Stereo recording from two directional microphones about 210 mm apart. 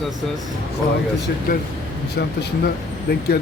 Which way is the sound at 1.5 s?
45° left (ahead or behind).